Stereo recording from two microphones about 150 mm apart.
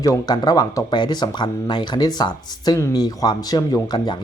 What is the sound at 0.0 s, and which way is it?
Speech, 25° left (ahead or behind).